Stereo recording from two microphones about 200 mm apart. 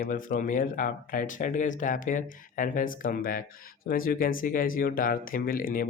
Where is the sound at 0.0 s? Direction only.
40° left (ahead or behind).